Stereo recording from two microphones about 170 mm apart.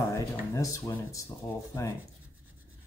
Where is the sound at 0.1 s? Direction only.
20° left (ahead or behind).